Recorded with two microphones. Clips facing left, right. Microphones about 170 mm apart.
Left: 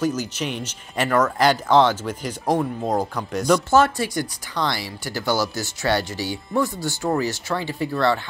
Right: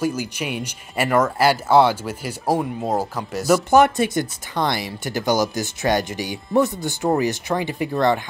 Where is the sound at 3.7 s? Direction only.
20° right (ahead or behind).